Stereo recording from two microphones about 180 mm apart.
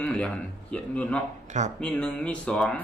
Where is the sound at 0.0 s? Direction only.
5° left (ahead or behind).